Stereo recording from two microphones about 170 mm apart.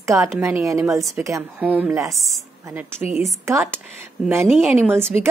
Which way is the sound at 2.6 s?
10° right (ahead or behind).